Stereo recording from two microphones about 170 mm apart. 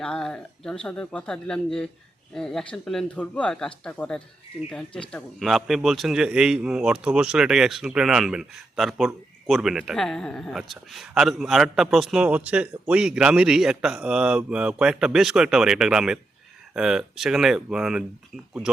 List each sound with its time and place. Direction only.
0.0 s speech: 5° left (ahead or behind)